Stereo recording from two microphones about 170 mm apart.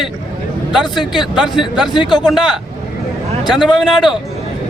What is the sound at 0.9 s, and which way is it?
A man's voice, 25° left (ahead or behind).